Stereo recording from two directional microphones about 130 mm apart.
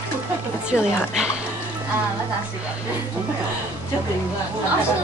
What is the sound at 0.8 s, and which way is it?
Speech, 5° right (ahead or behind).